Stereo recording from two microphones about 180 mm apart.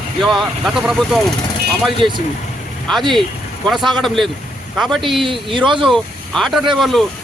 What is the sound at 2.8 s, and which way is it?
Speech, centre (ahead or behind).